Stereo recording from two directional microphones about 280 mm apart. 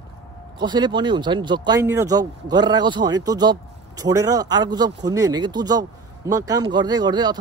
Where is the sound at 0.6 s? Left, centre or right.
Centre.